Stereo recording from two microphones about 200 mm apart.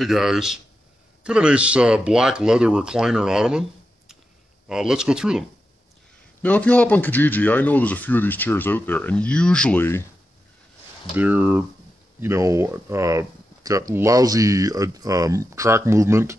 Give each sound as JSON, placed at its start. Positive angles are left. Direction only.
{"t": 0.0, "sound": "speech", "side_deg": 0}
{"t": 4.6, "sound": "speech", "side_deg": -5}
{"t": 6.4, "sound": "speech", "side_deg": 5}
{"t": 11.1, "sound": "speech", "side_deg": -10}